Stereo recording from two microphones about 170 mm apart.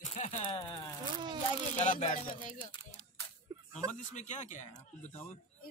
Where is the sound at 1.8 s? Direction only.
45° left (ahead or behind).